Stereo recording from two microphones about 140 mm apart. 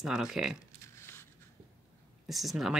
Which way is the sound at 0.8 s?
20° left (ahead or behind).